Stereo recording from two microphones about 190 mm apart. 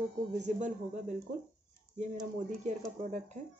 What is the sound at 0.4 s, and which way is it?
Speech, 40° right (ahead or behind).